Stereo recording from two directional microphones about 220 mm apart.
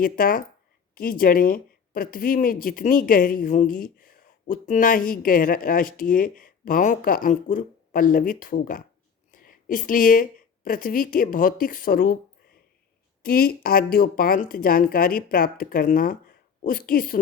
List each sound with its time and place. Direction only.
0.0 s a woman's voice: 40° left (ahead or behind)
13.2 s speech: 40° left (ahead or behind)